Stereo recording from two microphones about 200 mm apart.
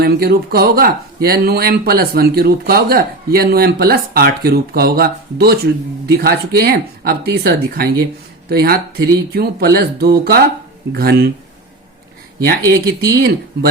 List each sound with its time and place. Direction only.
0.0 s speech: 50° right (ahead or behind)
13.1 s speech: 50° right (ahead or behind)